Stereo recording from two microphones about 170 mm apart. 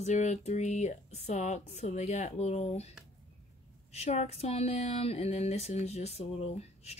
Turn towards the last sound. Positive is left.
turn(degrees=40)  # may be behind; listen again after turning